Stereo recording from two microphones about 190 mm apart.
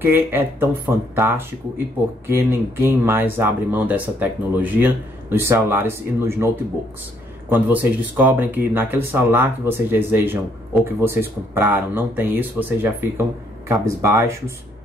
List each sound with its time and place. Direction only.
0.0 s speech: 10° right (ahead or behind)